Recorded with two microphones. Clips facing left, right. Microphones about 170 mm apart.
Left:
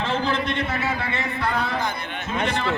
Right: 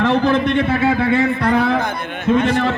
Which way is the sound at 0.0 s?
65° right (ahead or behind).